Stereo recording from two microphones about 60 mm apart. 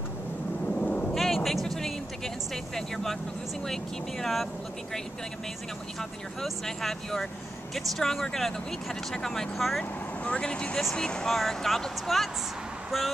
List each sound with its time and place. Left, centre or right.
0.7 s a sound: centre
1.1 s music: centre
3.6 s speech: centre
5.9 s speech: centre
10.2 s speech: centre
10.8 s speech: centre
11.3 s speech: centre